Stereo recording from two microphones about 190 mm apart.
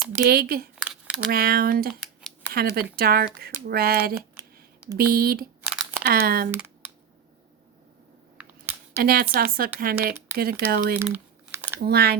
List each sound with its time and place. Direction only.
0.2 s speech: 50° right (ahead or behind)
0.8 s a sound: 5° right (ahead or behind)
1.3 s speech: 50° right (ahead or behind)
8.4 s a sound: 10° right (ahead or behind)
9.0 s speech: 55° right (ahead or behind)
11.0 s crumpling: 10° right (ahead or behind)
11.9 s speech: 55° right (ahead or behind)